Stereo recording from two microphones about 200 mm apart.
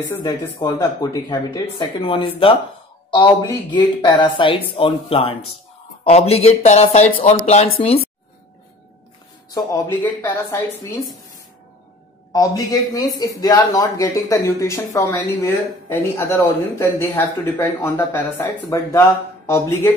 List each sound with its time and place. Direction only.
0.1 s speech: 15° left (ahead or behind)
3.7 s speech: 25° left (ahead or behind)
9.5 s speech: 20° left (ahead or behind)
12.3 s speech: 15° left (ahead or behind)